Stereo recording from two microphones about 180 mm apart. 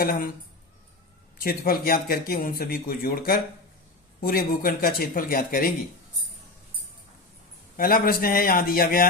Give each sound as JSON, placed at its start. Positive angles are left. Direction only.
{"t": 0.0, "sound": "speech", "side_deg": 55}
{"t": 1.4, "sound": "speech", "side_deg": 55}
{"t": 7.8, "sound": "speech", "side_deg": 55}